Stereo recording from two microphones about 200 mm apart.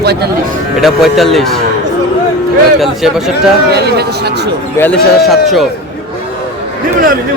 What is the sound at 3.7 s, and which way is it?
Speech, 55° right (ahead or behind).